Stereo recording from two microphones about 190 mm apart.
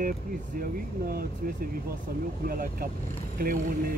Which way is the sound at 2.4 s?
50° right (ahead or behind).